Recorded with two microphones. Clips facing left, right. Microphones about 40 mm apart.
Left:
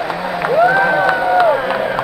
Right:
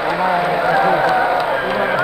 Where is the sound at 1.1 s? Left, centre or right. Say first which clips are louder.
Left 1 dB; centre.